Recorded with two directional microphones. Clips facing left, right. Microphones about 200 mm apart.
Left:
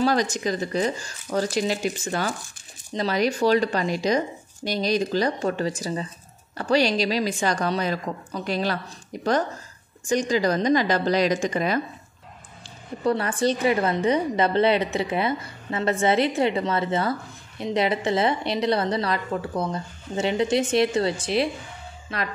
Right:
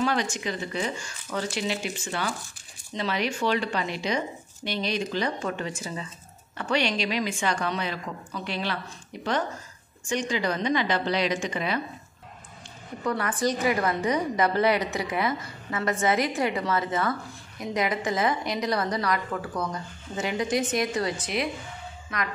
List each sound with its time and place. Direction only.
0.0 s speech: 40° left (ahead or behind)
13.0 s a woman's voice: 30° left (ahead or behind)